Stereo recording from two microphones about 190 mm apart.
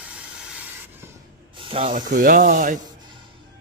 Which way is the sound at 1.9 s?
45° right (ahead or behind).